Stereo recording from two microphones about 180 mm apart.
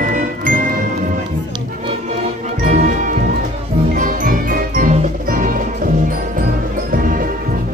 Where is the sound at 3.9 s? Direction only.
50° right (ahead or behind).